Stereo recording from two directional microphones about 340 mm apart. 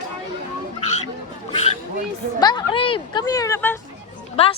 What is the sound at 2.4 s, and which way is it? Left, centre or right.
Speech, centre.